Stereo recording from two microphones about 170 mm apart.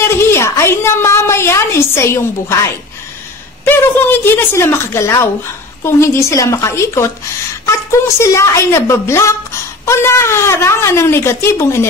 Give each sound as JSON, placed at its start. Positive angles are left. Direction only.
{"t": 0.1, "sound": "a woman's voice", "side_deg": 15}
{"t": 3.6, "sound": "a woman's voice", "side_deg": 10}